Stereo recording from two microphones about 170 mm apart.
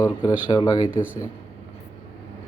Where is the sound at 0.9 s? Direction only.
10° right (ahead or behind).